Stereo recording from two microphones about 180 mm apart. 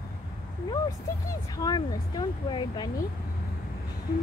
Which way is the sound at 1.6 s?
25° left (ahead or behind).